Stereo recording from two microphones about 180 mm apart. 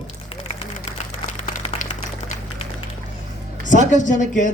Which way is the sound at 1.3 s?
35° left (ahead or behind).